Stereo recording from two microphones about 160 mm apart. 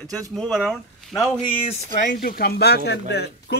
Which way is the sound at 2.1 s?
65° left (ahead or behind).